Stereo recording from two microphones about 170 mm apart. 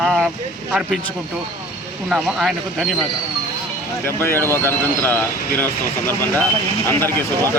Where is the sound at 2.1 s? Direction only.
Centre (ahead or behind).